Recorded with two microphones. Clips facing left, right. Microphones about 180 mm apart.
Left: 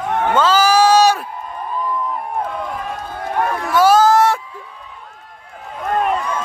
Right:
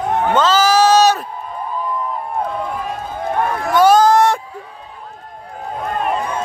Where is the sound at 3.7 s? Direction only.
5° left (ahead or behind).